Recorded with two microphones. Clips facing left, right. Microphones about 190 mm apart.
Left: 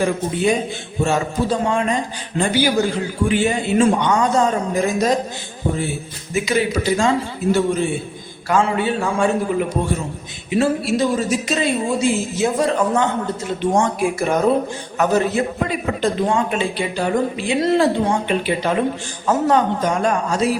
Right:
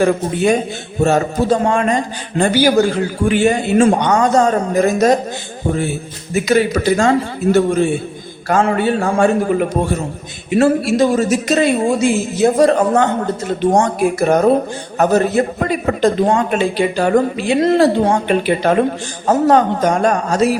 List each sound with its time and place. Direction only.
1.0 s a man's voice: 45° right (ahead or behind)
6.3 s a man's voice: 45° right (ahead or behind)
19.2 s a man's voice: 45° right (ahead or behind)